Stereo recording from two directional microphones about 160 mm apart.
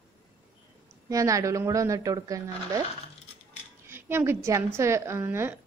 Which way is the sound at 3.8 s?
15° right (ahead or behind).